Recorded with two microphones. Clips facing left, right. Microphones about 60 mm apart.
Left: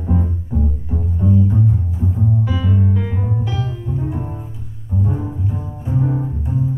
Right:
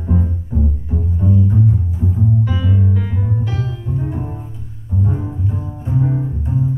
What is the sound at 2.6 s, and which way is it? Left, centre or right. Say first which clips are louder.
Music: even; centre.